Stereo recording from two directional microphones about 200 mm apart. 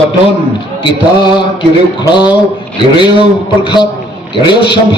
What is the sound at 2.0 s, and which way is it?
A man's voice, 20° left (ahead or behind).